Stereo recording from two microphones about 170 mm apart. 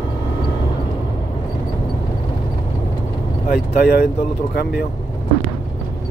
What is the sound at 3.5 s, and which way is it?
Speech, 65° left (ahead or behind).